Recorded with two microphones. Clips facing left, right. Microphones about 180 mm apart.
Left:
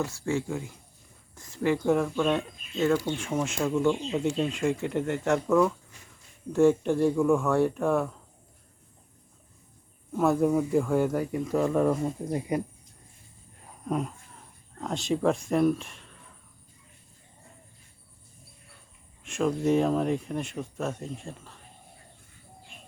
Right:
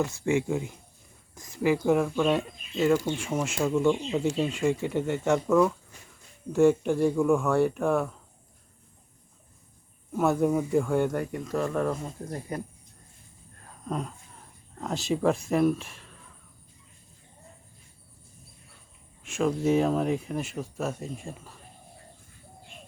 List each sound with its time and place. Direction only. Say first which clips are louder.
0.0 s speech: right 3 dB; 20° right (ahead or behind); by 8.1 s centre (ahead or behind)
10.1 s speech: left 1 dB; centre (ahead or behind); by 12.6 s 15° left (ahead or behind)
13.7 s a sound: left 3 dB; 10° left (ahead or behind)
14.8 s speech: even; centre (ahead or behind)
19.2 s speech: even; centre (ahead or behind)